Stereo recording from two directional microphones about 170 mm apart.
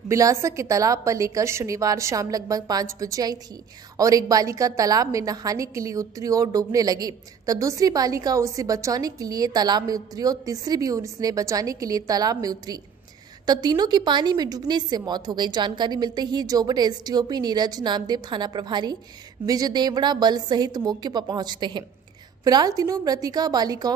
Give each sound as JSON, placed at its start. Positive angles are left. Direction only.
{"t": 0.1, "sound": "a woman's voice", "side_deg": -20}